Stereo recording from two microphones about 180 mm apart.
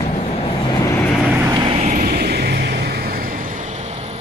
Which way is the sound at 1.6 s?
35° right (ahead or behind).